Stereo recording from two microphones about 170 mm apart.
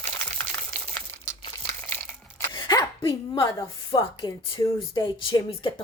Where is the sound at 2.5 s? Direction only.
25° left (ahead or behind).